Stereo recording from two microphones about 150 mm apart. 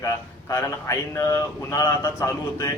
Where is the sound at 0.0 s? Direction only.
20° left (ahead or behind).